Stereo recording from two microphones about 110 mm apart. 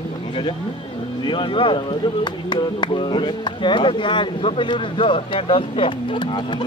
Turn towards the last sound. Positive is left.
turn(degrees=50)  # may be behind; listen again after turning